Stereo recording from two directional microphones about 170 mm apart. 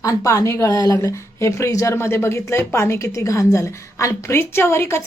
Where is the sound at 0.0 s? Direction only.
20° left (ahead or behind).